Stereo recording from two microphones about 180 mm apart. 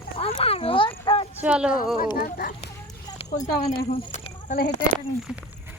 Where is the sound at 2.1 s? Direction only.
55° left (ahead or behind).